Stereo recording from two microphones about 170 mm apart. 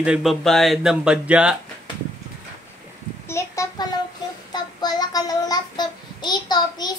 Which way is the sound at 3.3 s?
15° left (ahead or behind).